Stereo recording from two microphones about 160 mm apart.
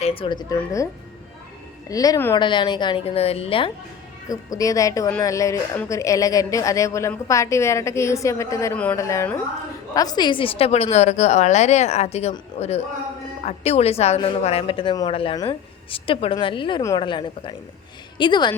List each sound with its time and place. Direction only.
0.0 s a woman's voice: 35° left (ahead or behind)
1.9 s a woman's voice: 20° left (ahead or behind)
2.3 s a woman's voice: 30° left (ahead or behind)
4.3 s a woman's voice: 20° left (ahead or behind)
8.7 s speech: 10° left (ahead or behind)
9.0 s a woman's voice: 20° left (ahead or behind)